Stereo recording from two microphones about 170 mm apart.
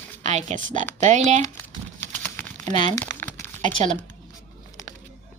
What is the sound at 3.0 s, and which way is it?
Crumpling, 15° left (ahead or behind).